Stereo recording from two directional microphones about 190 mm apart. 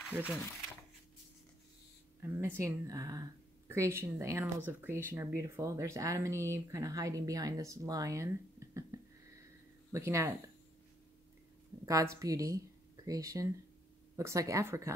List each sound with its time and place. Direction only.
0.1 s speech: 10° right (ahead or behind)
2.3 s a woman's voice: 10° right (ahead or behind)
11.8 s a woman's voice: 15° right (ahead or behind)